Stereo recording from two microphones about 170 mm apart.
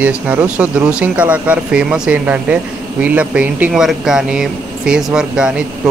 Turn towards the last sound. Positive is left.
turn(degrees=-5)  # may be behind; listen again after turning